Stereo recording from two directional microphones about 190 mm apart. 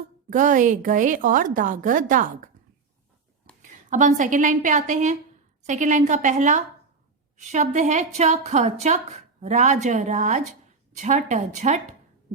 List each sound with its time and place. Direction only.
0.3 s a woman's voice: 40° right (ahead or behind)
3.6 s a woman's voice: 40° right (ahead or behind)